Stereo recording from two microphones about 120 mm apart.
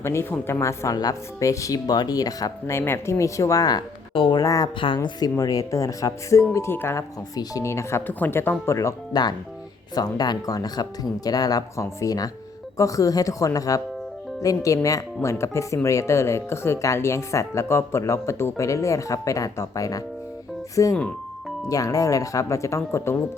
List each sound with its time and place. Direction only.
0.0 s speech: 20° left (ahead or behind); by 4.4 s 40° left (ahead or behind)
4.4 s speech: 30° left (ahead or behind)
9.9 s speech: 35° left (ahead or behind)